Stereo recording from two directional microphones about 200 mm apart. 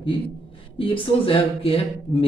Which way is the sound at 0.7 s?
25° left (ahead or behind).